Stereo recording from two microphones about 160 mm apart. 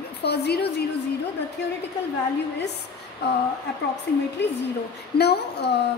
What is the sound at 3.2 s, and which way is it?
A woman's voice, 90° left.